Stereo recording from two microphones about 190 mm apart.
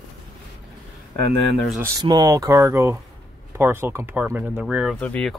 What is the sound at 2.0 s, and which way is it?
Speech, 20° right (ahead or behind).